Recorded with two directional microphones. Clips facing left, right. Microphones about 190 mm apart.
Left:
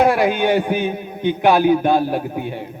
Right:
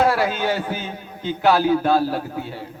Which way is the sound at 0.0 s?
15° left (ahead or behind).